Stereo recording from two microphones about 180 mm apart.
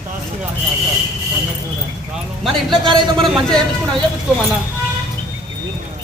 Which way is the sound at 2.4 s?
Centre (ahead or behind).